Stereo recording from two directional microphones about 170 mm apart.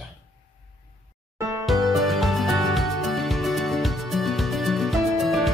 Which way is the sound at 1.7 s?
Centre (ahead or behind).